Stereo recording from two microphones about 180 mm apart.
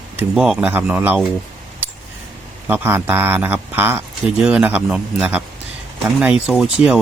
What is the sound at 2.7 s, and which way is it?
Speech, 10° right (ahead or behind).